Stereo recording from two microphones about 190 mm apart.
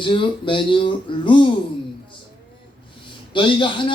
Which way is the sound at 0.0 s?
25° left (ahead or behind).